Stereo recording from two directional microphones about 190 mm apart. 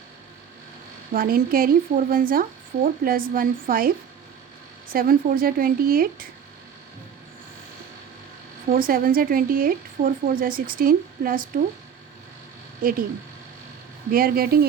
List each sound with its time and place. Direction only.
1.1 s speech: 50° right (ahead or behind)
8.7 s speech: 50° right (ahead or behind)
12.8 s speech: 50° right (ahead or behind)
14.1 s speech: 50° right (ahead or behind)